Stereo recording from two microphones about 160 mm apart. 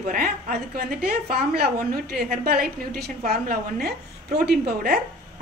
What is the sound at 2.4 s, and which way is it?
A woman's voice, 70° right (ahead or behind).